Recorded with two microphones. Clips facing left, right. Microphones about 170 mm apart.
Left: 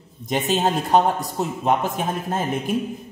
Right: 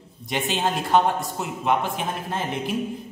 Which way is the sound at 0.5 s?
40° left (ahead or behind).